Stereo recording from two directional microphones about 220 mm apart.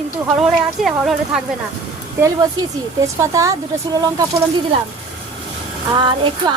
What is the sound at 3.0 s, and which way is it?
Speech, 15° right (ahead or behind).